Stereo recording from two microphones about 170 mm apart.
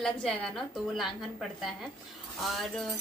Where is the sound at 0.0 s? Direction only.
5° left (ahead or behind).